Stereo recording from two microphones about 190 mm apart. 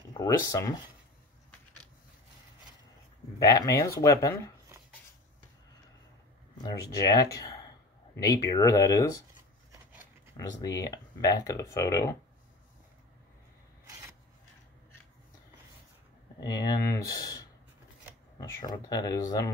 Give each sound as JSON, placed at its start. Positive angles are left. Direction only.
{"t": 0.2, "sound": "speech", "side_deg": 20}
{"t": 3.3, "sound": "speech", "side_deg": 20}
{"t": 6.6, "sound": "speech", "side_deg": 20}
{"t": 9.7, "sound": "rub", "side_deg": -15}
{"t": 10.3, "sound": "speech", "side_deg": 20}
{"t": 16.3, "sound": "speech", "side_deg": 20}